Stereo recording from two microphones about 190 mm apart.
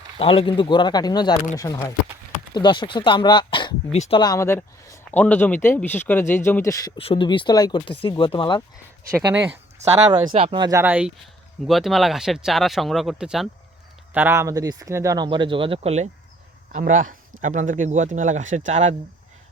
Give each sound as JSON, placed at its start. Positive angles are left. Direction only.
{"t": 0.2, "sound": "speech", "side_deg": 30}
{"t": 3.9, "sound": "speech", "side_deg": 35}
{"t": 4.2, "sound": "speech", "side_deg": 15}
{"t": 9.1, "sound": "speech", "side_deg": -15}
{"t": 10.3, "sound": "speech", "side_deg": -30}
{"t": 16.7, "sound": "speech", "side_deg": -45}